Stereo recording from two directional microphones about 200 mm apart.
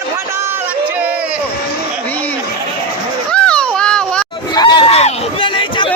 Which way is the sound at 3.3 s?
5° left (ahead or behind).